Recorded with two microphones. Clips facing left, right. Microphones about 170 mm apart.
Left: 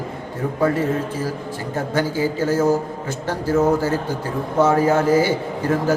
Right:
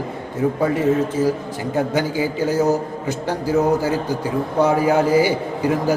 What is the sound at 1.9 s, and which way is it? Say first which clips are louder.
A man's voice: even; 15° right (ahead or behind).